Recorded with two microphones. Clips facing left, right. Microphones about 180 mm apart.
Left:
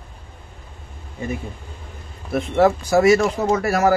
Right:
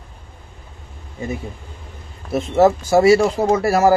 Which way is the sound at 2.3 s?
25° right (ahead or behind).